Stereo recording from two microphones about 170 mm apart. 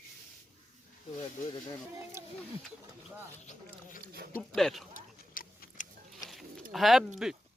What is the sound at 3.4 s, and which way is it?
Speech, 50° left (ahead or behind).